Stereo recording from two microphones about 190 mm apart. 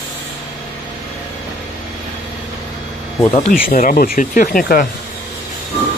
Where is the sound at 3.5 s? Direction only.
45° left (ahead or behind).